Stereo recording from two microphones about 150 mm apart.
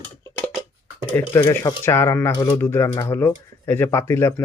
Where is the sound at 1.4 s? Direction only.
30° left (ahead or behind).